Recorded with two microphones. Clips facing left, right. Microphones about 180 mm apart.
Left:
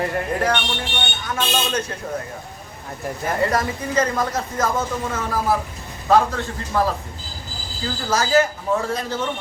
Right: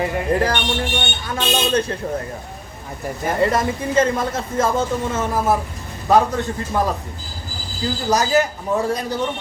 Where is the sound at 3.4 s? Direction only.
25° right (ahead or behind).